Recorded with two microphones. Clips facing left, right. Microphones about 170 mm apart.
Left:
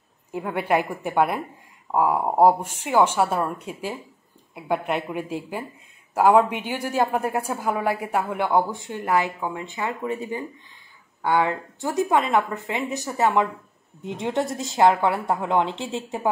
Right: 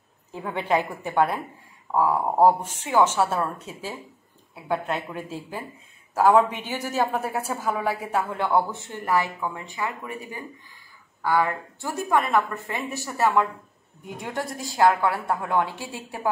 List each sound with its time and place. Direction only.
0.3 s a woman's voice: 10° left (ahead or behind)